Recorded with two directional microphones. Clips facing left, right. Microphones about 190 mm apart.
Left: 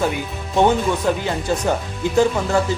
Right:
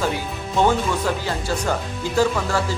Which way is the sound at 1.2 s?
20° left (ahead or behind).